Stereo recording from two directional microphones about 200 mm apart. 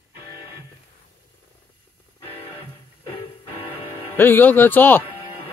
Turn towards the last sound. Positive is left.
turn(degrees=10)  # may be behind; listen again after turning